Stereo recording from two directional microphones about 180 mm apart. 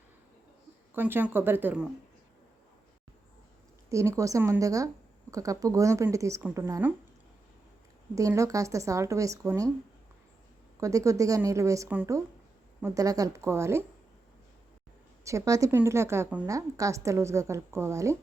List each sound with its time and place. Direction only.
0.9 s a woman's voice: 10° right (ahead or behind)
3.8 s a woman's voice: 15° right (ahead or behind)
8.1 s a woman's voice: 15° right (ahead or behind)
10.8 s a woman's voice: 20° right (ahead or behind)
15.2 s a woman's voice: 15° right (ahead or behind)